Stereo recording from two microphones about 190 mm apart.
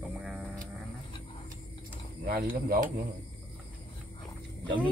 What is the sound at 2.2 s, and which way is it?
Speech, 50° right (ahead or behind).